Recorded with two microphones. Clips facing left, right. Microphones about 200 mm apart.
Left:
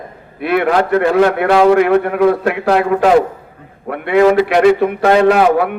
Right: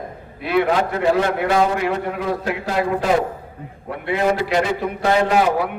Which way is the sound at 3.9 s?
60° left (ahead or behind).